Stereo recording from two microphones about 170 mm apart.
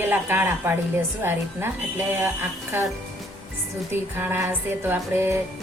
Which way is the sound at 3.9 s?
15° right (ahead or behind).